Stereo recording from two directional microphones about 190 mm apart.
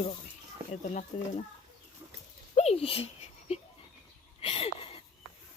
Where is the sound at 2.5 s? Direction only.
35° left (ahead or behind).